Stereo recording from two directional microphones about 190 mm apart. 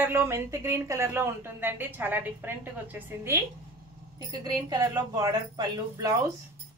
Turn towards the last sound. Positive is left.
turn(degrees=-20)  # may be behind; listen again after turning